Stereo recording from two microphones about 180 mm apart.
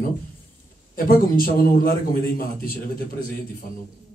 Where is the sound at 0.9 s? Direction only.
55° left (ahead or behind).